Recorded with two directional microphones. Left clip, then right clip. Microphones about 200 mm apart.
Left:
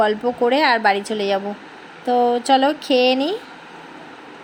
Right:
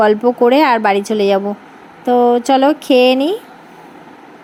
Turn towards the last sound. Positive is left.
turn(degrees=-30)  # may be behind; listen again after turning